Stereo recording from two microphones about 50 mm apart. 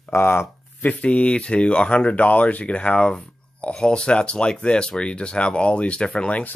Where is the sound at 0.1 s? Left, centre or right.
Left.